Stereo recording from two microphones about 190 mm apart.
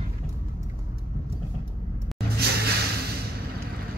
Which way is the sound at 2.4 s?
55° right (ahead or behind).